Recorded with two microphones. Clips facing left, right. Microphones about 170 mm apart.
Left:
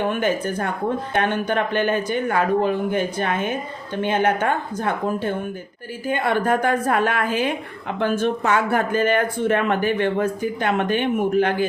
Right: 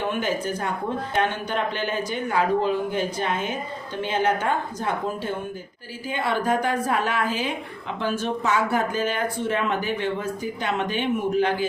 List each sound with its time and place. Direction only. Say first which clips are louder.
0.2 s a woman's voice: left 4 dB; 55° left (ahead or behind)